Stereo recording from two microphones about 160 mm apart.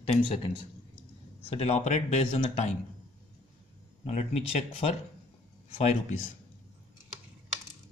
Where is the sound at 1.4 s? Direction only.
40° left (ahead or behind).